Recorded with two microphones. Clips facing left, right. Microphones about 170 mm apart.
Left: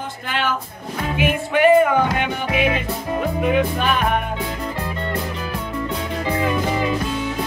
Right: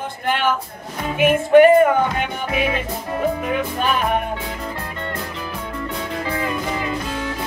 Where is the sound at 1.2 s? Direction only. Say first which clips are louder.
Right 8 dB; 50° right (ahead or behind).